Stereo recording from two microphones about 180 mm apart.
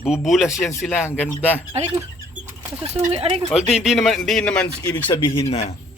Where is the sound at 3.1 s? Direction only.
35° right (ahead or behind).